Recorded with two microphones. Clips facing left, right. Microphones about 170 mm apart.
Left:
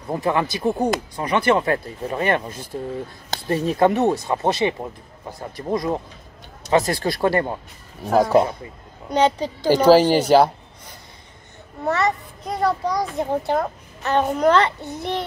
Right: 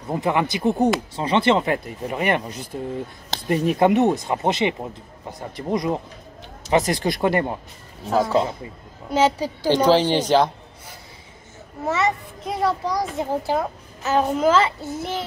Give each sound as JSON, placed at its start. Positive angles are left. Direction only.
{"t": 0.1, "sound": "speech", "side_deg": -20}
{"t": 8.1, "sound": "a woman's voice", "side_deg": 15}
{"t": 9.1, "sound": "speech", "side_deg": -5}
{"t": 9.7, "sound": "a woman's voice", "side_deg": 10}
{"t": 11.8, "sound": "a child's voice", "side_deg": 0}